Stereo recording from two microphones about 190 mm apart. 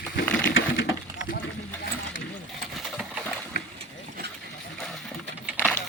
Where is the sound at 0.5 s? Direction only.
90° left.